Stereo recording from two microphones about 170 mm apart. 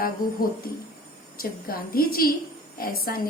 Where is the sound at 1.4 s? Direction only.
60° left (ahead or behind).